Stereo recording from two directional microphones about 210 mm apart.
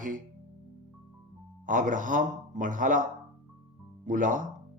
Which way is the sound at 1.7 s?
40° right (ahead or behind).